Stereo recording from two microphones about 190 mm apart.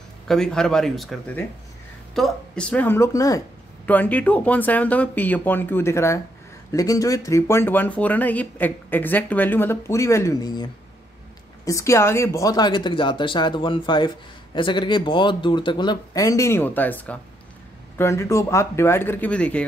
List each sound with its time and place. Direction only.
0.3 s speech: 5° left (ahead or behind)